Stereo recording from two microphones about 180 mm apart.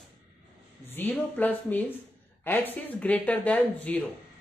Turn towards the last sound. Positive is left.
turn(degrees=10)  # may be behind; listen again after turning